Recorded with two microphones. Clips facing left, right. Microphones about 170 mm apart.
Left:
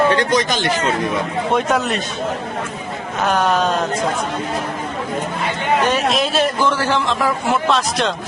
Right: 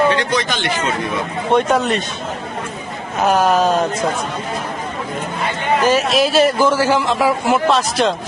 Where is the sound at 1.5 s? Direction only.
Centre (ahead or behind).